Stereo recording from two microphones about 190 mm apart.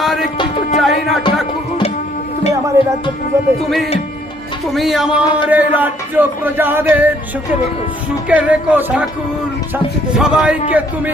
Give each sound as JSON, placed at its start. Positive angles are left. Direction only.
{"t": 0.0, "sound": "music", "side_deg": 0}
{"t": 0.3, "sound": "music", "side_deg": 35}
{"t": 0.8, "sound": "music", "side_deg": 0}
{"t": 2.8, "sound": "speech", "side_deg": -15}
{"t": 4.6, "sound": "speech", "side_deg": 0}
{"t": 8.3, "sound": "speech", "side_deg": -10}